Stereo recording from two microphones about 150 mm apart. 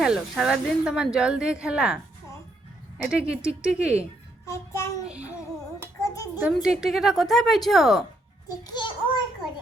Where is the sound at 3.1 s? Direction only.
5° right (ahead or behind).